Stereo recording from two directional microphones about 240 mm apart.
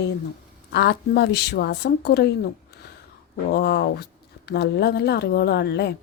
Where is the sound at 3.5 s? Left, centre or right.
Left.